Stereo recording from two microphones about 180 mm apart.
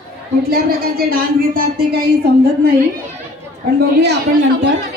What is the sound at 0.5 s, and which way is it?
Speech, 55° right (ahead or behind).